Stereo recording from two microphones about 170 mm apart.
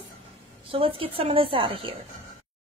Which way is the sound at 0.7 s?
30° right (ahead or behind).